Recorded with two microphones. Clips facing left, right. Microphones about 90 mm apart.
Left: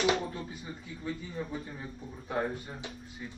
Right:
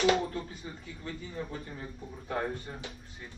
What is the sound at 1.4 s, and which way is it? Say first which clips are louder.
Speech: left 1 dB; 5° left (ahead or behind).